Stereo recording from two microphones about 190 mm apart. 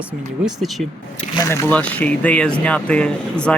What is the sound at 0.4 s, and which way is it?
Speech, centre (ahead or behind).